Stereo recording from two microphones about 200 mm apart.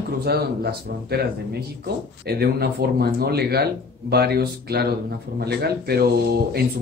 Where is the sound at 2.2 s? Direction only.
50° right (ahead or behind).